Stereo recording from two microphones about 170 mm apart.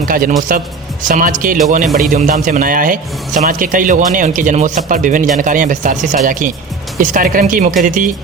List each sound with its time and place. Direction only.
0.1 s a man's voice: 55° right (ahead or behind)